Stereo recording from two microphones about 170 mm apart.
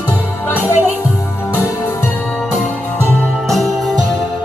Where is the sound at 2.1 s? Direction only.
5° left (ahead or behind).